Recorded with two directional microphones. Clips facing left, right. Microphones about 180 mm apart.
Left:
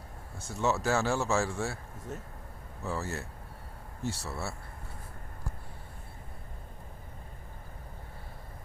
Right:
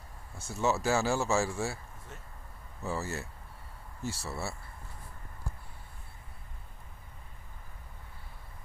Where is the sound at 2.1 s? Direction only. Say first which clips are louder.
Left 10 dB; 40° left (ahead or behind).